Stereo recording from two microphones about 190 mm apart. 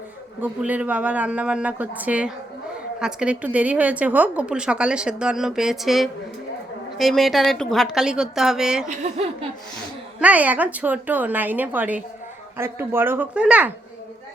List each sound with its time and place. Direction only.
0.4 s a woman's voice: 10° right (ahead or behind)
8.9 s speech: 35° right (ahead or behind)
10.2 s speech: 10° right (ahead or behind)